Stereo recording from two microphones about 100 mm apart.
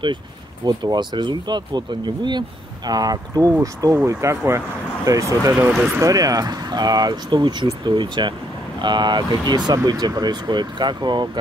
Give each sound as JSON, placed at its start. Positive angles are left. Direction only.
{"t": 0.7, "sound": "speech", "side_deg": -45}
{"t": 5.7, "sound": "speech", "side_deg": -10}
{"t": 5.9, "sound": "speech", "side_deg": -35}